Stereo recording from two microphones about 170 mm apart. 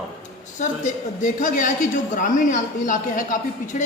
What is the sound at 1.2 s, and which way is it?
Speech, 50° left (ahead or behind).